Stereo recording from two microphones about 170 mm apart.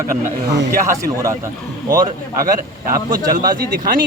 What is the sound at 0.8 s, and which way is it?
A man's voice, 20° right (ahead or behind).